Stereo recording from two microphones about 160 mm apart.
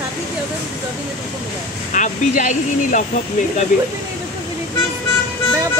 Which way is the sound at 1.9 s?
50° left (ahead or behind).